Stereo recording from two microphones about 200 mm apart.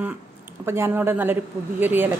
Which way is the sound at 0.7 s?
10° right (ahead or behind).